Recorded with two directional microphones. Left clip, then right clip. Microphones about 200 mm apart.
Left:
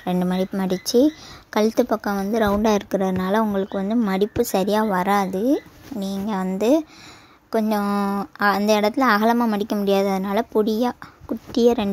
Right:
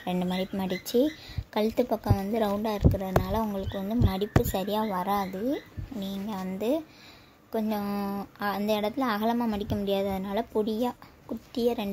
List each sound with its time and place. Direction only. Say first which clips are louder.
0.0 s speech: left 7 dB; 15° left (ahead or behind)
2.6 s a woman's voice: left 9 dB; 40° left (ahead or behind)